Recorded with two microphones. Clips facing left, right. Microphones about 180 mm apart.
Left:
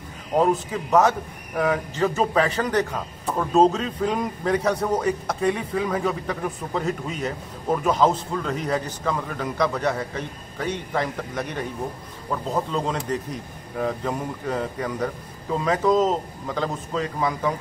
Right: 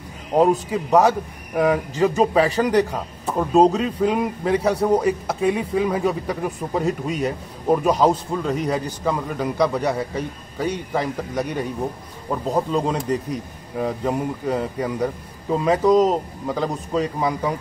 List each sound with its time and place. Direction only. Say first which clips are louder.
0.4 s a man's voice: right 4 dB; 15° right (ahead or behind)